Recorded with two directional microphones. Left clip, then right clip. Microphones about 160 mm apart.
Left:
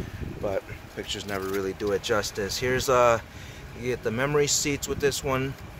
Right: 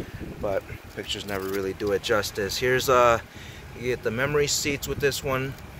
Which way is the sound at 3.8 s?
15° left (ahead or behind).